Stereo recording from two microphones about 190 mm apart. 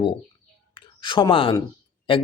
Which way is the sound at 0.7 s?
25° left (ahead or behind).